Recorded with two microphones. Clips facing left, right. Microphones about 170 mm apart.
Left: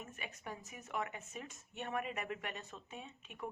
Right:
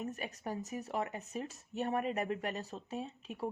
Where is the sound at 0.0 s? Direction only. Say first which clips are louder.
Right 8 dB; 40° right (ahead or behind).